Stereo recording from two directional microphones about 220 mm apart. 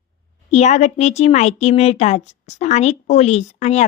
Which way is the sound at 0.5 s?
30° left (ahead or behind).